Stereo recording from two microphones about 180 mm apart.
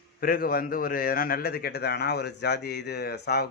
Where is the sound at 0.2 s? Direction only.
55° left (ahead or behind).